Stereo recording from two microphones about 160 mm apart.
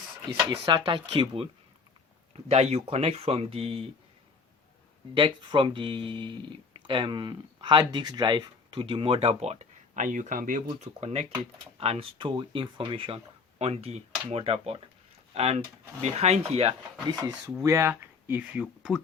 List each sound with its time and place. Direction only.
0.5 s speech: 25° right (ahead or behind)
5.1 s speech: 30° right (ahead or behind)
17.2 s speech: 20° right (ahead or behind); by 19.0 s centre (ahead or behind)